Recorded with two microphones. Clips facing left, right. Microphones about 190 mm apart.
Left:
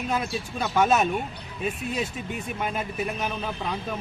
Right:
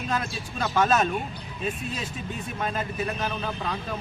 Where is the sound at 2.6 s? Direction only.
10° left (ahead or behind).